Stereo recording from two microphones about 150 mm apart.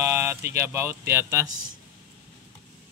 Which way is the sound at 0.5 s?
15° right (ahead or behind).